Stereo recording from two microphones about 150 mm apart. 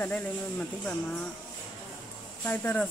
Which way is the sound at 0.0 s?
10° left (ahead or behind).